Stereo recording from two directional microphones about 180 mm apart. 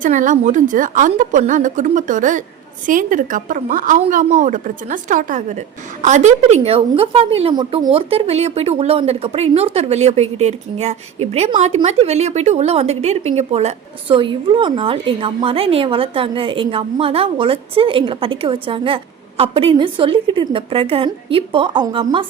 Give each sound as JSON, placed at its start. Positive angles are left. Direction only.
{"t": 0.0, "sound": "a woman's voice", "side_deg": -45}